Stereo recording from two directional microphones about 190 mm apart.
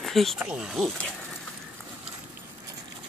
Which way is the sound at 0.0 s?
Centre (ahead or behind).